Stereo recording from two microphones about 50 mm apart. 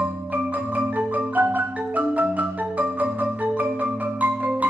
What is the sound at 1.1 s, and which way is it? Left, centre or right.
Marimba, right.